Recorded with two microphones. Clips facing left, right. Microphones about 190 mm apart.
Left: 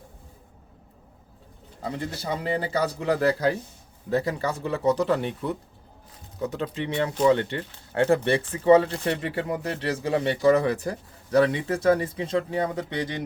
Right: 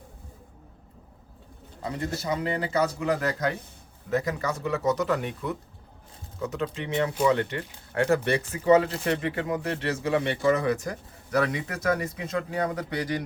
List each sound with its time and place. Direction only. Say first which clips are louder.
1.8 s a man's voice: even; 30° left (ahead or behind)